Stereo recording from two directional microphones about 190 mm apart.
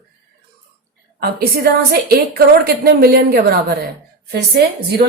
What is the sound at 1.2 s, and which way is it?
A woman's voice, 55° right (ahead or behind).